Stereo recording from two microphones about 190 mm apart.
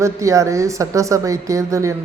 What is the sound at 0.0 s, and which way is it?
A woman's voice, 15° right (ahead or behind).